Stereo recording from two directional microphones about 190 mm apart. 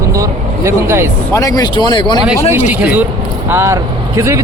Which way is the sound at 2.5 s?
10° right (ahead or behind).